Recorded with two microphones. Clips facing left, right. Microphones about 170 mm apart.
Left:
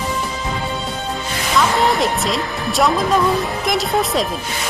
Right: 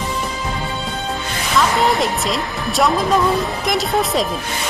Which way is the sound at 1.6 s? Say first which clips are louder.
Even; centre (ahead or behind).